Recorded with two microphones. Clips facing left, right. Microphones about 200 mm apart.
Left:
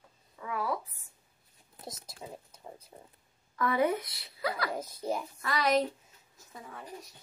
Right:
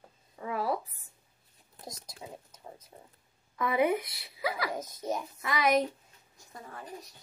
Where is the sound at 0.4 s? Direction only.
30° right (ahead or behind).